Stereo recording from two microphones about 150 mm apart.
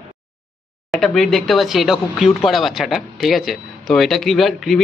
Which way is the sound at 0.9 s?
Centre (ahead or behind).